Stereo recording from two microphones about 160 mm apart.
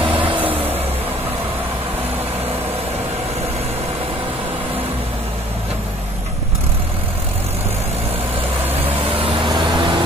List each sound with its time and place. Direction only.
9.1 s vehicle: 35° right (ahead or behind)